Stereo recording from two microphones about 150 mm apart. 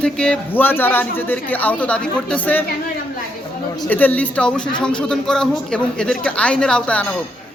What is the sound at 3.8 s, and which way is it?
A man's voice, 10° left (ahead or behind).